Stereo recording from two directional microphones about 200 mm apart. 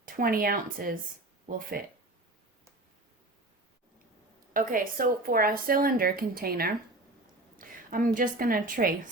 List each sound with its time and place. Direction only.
0.0 s speech: 45° right (ahead or behind)
4.5 s a woman's voice: 45° right (ahead or behind)